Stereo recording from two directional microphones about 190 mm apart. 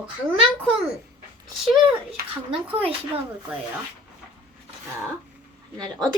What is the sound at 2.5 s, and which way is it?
Speech, 30° right (ahead or behind).